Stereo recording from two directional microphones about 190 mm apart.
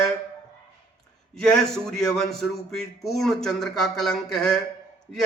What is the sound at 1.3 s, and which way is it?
A man's voice, centre (ahead or behind).